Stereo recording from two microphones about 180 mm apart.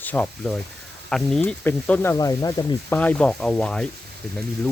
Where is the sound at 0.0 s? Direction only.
10° left (ahead or behind).